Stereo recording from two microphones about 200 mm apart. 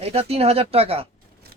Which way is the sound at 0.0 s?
30° right (ahead or behind).